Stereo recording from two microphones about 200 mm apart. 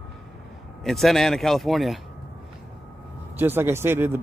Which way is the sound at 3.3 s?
10° right (ahead or behind).